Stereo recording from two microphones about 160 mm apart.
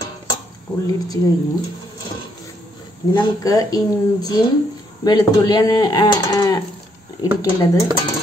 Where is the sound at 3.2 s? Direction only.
25° left (ahead or behind).